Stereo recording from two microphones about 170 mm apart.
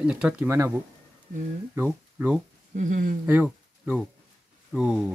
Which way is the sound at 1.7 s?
10° right (ahead or behind).